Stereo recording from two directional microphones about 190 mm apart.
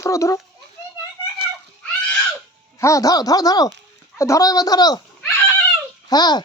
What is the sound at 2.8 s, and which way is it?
Speech, 20° left (ahead or behind).